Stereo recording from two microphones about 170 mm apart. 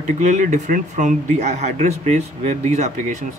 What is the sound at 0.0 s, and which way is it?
Speech, 45° right (ahead or behind).